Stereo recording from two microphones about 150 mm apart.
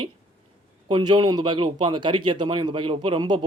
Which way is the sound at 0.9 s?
30° right (ahead or behind).